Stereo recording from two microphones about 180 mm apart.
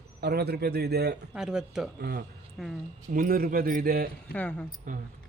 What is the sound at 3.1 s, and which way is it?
A man's voice, 50° right (ahead or behind).